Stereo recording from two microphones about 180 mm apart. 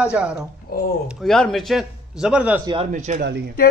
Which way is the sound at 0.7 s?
55° left (ahead or behind).